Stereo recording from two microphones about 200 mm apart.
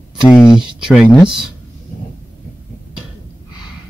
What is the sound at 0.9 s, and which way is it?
Speech, 5° right (ahead or behind).